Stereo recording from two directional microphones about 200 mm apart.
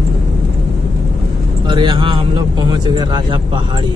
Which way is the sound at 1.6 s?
20° right (ahead or behind).